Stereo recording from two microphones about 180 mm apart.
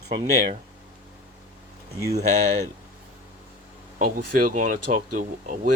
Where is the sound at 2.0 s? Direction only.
20° right (ahead or behind).